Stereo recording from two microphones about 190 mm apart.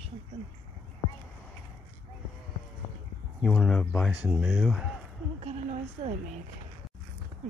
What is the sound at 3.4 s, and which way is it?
Speech, centre (ahead or behind).